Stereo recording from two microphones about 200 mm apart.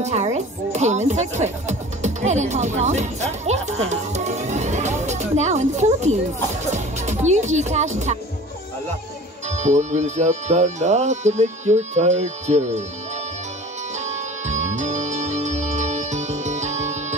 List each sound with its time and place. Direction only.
0.0 s speech: 35° right (ahead or behind)
3.9 s music: 35° right (ahead or behind)
6.6 s speech: 35° right (ahead or behind)
9.5 s speech: 35° right (ahead or behind)
13.9 s music: 35° right (ahead or behind)